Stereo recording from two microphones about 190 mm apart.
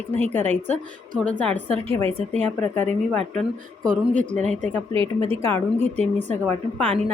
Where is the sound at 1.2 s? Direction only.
5° left (ahead or behind).